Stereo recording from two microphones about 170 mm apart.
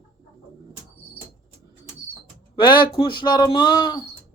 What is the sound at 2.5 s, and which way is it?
Speech, 25° left (ahead or behind).